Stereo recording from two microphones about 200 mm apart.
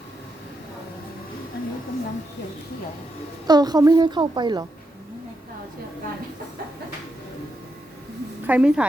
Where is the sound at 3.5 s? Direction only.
20° right (ahead or behind).